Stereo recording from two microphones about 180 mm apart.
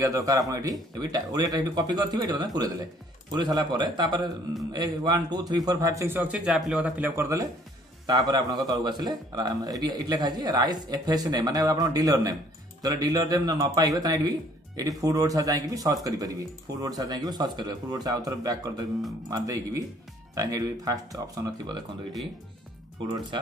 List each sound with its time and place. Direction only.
0.0 s a man's voice: 20° right (ahead or behind)